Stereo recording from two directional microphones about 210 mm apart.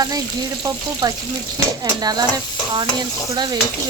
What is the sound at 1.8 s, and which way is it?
A woman's voice, 20° right (ahead or behind).